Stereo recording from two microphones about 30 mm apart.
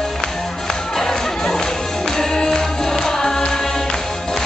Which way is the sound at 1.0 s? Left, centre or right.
Centre.